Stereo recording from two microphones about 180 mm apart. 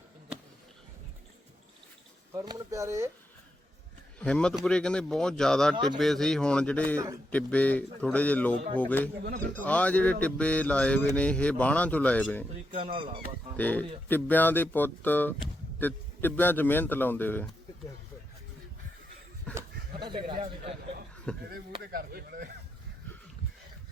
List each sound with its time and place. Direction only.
2.3 s speech: 20° right (ahead or behind)
4.2 s speech: 5° left (ahead or behind)
6.9 s speech: 20° right (ahead or behind)
7.3 s a man's voice: 10° left (ahead or behind)
12.7 s a man's voice: 30° right (ahead or behind)
13.6 s a man's voice: 10° left (ahead or behind)
19.5 s a sound: 5° left (ahead or behind)
20.0 s a sound: 25° right (ahead or behind)
20.4 s a man's voice: 30° right (ahead or behind)
21.3 s a man's voice: 5° left (ahead or behind)
21.8 s speech: 60° right (ahead or behind)